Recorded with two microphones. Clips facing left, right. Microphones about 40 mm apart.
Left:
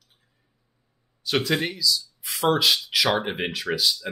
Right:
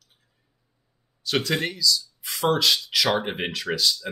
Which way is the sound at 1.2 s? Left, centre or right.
Centre.